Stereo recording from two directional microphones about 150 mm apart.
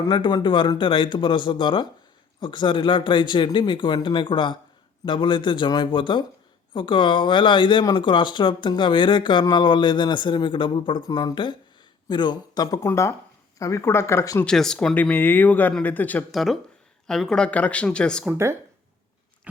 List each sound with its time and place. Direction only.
0.1 s speech: 30° left (ahead or behind)
14.4 s speech: 5° left (ahead or behind)
16.3 s speech: centre (ahead or behind)
18.3 s speech: 15° right (ahead or behind)